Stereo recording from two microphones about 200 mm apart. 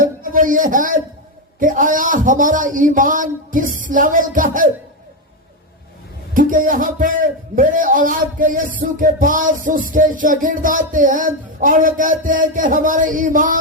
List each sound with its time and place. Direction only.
0.0 s a man's voice: 40° right (ahead or behind)
6.3 s a man's voice: 40° right (ahead or behind)